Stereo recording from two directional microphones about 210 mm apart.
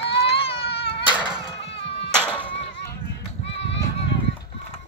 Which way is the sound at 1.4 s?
25° left (ahead or behind).